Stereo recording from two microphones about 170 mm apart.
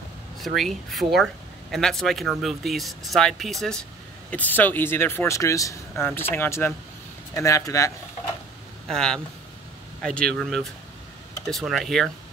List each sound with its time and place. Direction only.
0.4 s speech: centre (ahead or behind); by 7.9 s 20° left (ahead or behind)
8.8 s speech: 5° left (ahead or behind)